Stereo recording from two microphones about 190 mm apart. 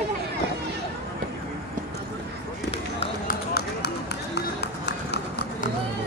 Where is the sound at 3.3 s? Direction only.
55° left (ahead or behind).